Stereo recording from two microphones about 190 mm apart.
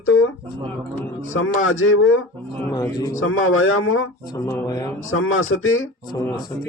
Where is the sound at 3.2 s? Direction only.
90° left.